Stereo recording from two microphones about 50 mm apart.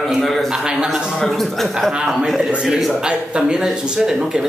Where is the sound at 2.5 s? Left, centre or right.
Centre.